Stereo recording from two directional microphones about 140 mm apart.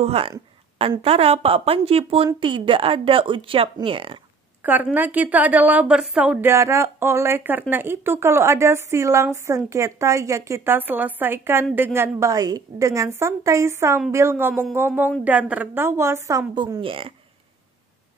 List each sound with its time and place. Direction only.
0.0 s speech: 45° right (ahead or behind)
4.9 s a woman's voice: 10° right (ahead or behind)
16.8 s speech: 40° right (ahead or behind)